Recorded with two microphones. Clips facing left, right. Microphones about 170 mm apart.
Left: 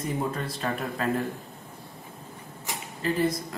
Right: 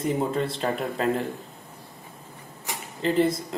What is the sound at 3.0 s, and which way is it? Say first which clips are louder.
Speech: right 4 dB; 25° right (ahead or behind).